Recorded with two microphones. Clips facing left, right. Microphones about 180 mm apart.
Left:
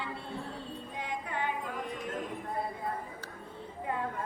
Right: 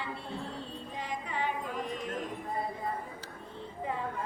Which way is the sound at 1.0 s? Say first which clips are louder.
Even; 60° left (ahead or behind).